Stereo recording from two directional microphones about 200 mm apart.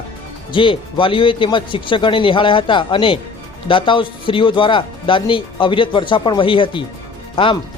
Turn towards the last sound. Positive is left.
turn(degrees=25)  # may be behind; listen again after turning